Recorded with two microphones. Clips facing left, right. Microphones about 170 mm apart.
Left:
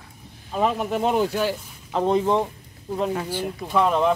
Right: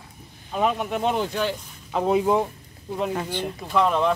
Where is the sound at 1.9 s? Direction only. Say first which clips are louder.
Even; 5° right (ahead or behind).